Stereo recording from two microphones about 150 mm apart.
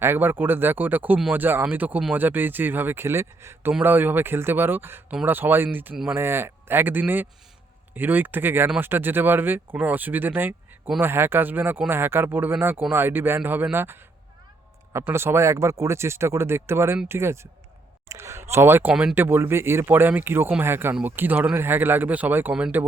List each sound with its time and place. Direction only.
0.0 s speech: 15° right (ahead or behind)